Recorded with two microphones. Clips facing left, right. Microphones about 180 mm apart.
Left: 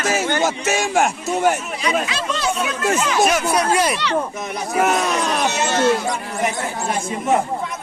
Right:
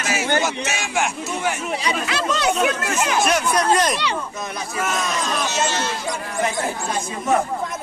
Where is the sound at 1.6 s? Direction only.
30° right (ahead or behind).